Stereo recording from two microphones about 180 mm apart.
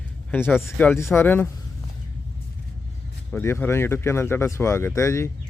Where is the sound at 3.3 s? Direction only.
10° left (ahead or behind).